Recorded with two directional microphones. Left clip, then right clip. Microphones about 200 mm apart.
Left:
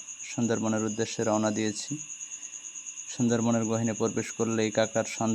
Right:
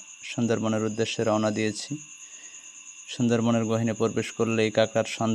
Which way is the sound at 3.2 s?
20° right (ahead or behind).